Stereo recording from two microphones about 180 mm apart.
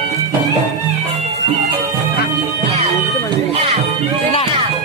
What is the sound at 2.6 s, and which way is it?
Bagpipes, 35° right (ahead or behind).